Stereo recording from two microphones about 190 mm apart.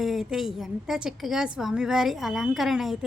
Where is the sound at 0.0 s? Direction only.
Centre (ahead or behind).